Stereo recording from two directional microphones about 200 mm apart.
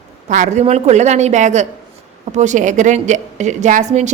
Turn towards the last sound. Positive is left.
turn(degrees=-35)  # may be behind; listen again after turning